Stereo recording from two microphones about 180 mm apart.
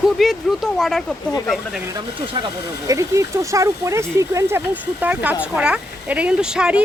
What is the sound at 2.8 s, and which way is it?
Speech, 20° right (ahead or behind).